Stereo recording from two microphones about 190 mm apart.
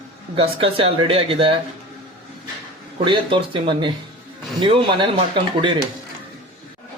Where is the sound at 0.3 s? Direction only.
30° right (ahead or behind).